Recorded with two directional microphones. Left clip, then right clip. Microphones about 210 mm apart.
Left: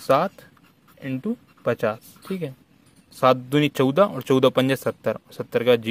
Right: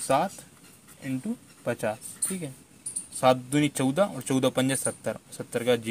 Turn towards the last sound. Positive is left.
turn(degrees=35)  # may be behind; listen again after turning